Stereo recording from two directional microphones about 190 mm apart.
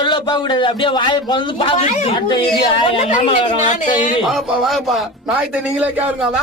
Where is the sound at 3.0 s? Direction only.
40° left (ahead or behind).